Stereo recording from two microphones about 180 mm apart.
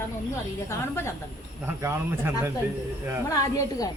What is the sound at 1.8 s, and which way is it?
Speech, 15° right (ahead or behind).